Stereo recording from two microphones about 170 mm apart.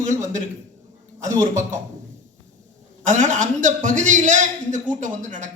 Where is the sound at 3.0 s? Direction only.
45° right (ahead or behind).